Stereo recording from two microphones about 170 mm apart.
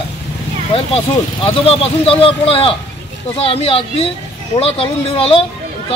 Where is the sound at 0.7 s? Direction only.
35° left (ahead or behind).